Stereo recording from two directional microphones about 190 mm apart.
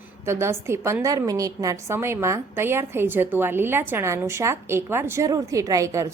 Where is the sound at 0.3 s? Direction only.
15° right (ahead or behind).